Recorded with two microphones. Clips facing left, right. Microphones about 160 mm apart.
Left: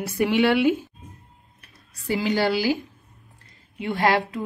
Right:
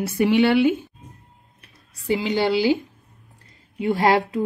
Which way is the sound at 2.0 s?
20° right (ahead or behind).